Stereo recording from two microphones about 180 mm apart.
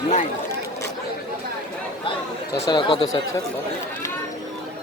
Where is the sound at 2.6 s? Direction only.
25° left (ahead or behind).